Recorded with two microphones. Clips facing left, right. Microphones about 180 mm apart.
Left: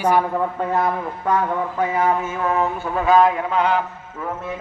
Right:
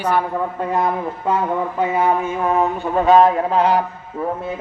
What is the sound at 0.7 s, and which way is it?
A man's voice, 20° right (ahead or behind).